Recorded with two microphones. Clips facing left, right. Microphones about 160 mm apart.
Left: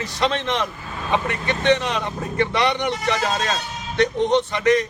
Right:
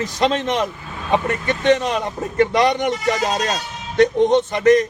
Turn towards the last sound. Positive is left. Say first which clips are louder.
# right 4 dB
turn(degrees=-45)  # may be behind; listen again after turning